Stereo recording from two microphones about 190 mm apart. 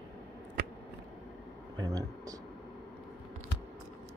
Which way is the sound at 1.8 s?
20° right (ahead or behind).